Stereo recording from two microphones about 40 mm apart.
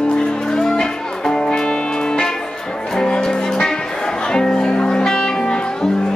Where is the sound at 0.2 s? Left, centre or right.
Centre.